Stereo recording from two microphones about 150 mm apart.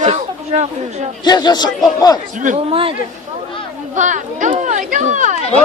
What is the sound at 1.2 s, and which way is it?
Speech, 30° left (ahead or behind).